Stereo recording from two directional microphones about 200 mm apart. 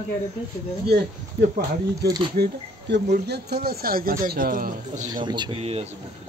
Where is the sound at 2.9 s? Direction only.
55° right (ahead or behind).